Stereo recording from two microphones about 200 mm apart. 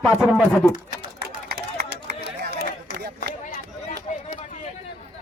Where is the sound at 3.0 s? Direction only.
55° right (ahead or behind).